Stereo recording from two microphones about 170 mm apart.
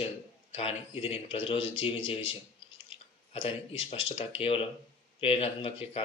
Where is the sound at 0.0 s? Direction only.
35° left (ahead or behind).